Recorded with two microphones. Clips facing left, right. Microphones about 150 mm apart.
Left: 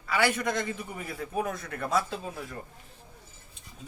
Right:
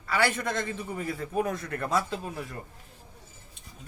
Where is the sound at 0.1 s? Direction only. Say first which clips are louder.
Even; 5° left (ahead or behind).